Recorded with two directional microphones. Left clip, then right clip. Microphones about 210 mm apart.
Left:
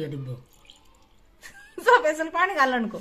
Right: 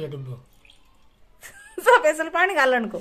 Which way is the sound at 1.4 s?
10° right (ahead or behind).